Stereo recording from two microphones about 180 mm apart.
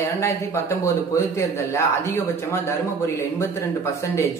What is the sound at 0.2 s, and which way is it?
Speech, 15° left (ahead or behind).